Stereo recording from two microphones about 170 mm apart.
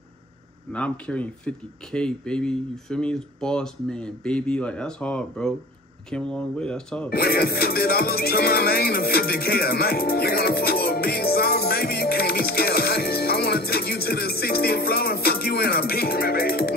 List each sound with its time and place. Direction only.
0.7 s speech: 5° left (ahead or behind)
7.1 s music: 65° left (ahead or behind)